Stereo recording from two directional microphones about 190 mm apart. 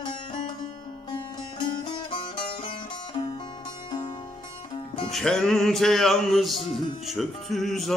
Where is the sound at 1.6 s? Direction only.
25° left (ahead or behind).